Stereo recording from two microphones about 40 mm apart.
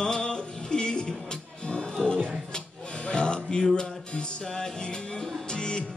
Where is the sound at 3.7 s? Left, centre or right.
Left.